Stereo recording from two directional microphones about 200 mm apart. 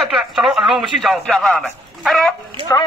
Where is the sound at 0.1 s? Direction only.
Centre (ahead or behind).